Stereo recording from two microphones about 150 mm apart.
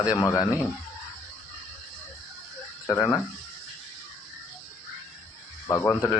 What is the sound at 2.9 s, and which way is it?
Speech, 15° left (ahead or behind).